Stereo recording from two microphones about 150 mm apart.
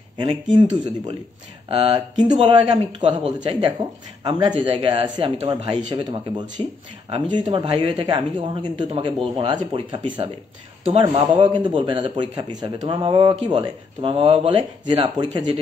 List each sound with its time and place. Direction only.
0.2 s a man's voice: 30° right (ahead or behind)
4.2 s a man's voice: 30° right (ahead or behind)